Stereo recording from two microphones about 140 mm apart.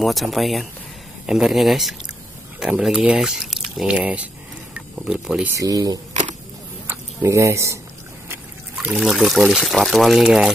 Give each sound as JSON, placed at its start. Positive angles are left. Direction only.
{"t": 0.0, "sound": "speech", "side_deg": 0}
{"t": 5.5, "sound": "speech", "side_deg": -25}
{"t": 8.7, "sound": "speech", "side_deg": -5}